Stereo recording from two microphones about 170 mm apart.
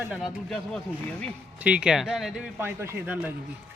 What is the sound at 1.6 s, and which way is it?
Speech, 5° right (ahead or behind).